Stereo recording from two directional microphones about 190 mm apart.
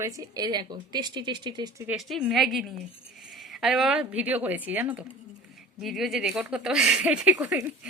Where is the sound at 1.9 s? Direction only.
Centre (ahead or behind).